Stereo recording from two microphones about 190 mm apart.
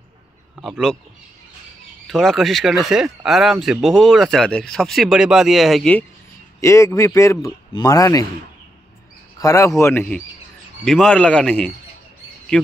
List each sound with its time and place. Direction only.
0.6 s speech: centre (ahead or behind)
2.0 s speech: centre (ahead or behind)
6.6 s a man's voice: 15° left (ahead or behind)
9.4 s a man's voice: 15° left (ahead or behind)